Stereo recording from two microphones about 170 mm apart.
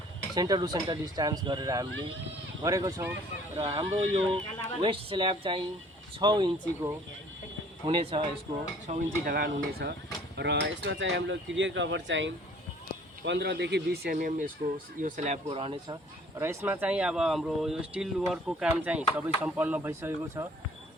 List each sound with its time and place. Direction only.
0.3 s speech: 25° right (ahead or behind)
3.6 s speech: 35° right (ahead or behind)
8.9 s speech: 40° right (ahead or behind)
9.2 s speech: 60° right (ahead or behind)
10.3 s cutlery: 85° right
11.1 s speech: 90° right; by 15.4 s 45° right (ahead or behind)
15.4 s speech: 30° right (ahead or behind)
16.4 s speech: 15° right (ahead or behind)